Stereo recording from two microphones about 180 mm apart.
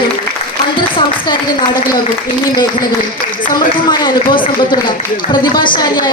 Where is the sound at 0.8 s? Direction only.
25° left (ahead or behind).